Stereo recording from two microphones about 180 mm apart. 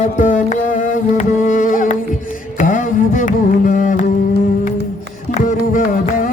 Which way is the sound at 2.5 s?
45° left (ahead or behind).